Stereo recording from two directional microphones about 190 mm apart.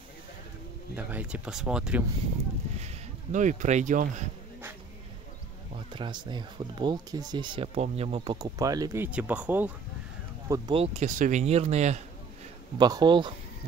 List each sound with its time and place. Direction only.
0.9 s speech: 5° right (ahead or behind)
2.8 s speech: 40° right (ahead or behind)
5.9 s speech: 25° right (ahead or behind); by 9.7 s 10° right (ahead or behind)
10.5 s speech: 30° right (ahead or behind)
12.7 s speech: 20° right (ahead or behind)